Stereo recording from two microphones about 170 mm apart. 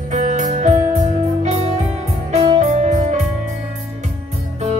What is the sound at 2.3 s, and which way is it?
Music, 45° right (ahead or behind).